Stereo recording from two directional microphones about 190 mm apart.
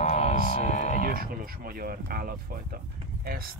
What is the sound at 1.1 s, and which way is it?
Speech, 50° right (ahead or behind).